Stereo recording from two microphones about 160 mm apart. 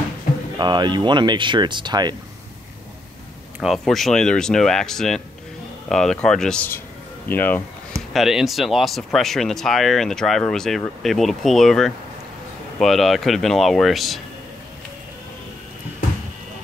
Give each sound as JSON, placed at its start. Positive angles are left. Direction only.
{"t": 0.6, "sound": "speech", "side_deg": -30}
{"t": 3.6, "sound": "speech", "side_deg": 0}
{"t": 8.1, "sound": "speech", "side_deg": 0}